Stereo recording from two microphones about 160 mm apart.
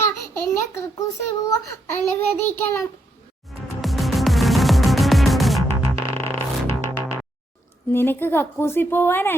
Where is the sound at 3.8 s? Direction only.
Centre (ahead or behind).